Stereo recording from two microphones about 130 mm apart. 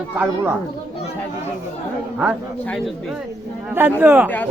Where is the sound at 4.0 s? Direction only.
15° right (ahead or behind).